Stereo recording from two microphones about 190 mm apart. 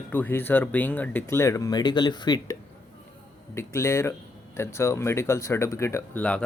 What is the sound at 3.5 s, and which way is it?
Speech, 15° left (ahead or behind).